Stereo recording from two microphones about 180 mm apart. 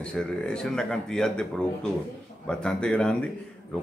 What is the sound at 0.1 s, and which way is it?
Speech, 5° left (ahead or behind).